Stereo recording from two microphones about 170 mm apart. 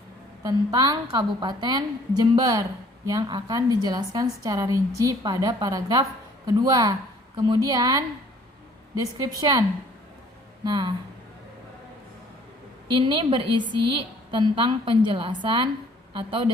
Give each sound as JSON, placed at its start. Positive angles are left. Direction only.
{"t": 0.4, "sound": "a woman's voice", "side_deg": -20}
{"t": 9.4, "sound": "a woman's voice", "side_deg": -20}
{"t": 12.9, "sound": "a woman's voice", "side_deg": -30}